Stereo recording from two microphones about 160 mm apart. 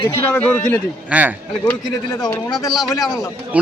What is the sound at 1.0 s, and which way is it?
Speech, 10° right (ahead or behind).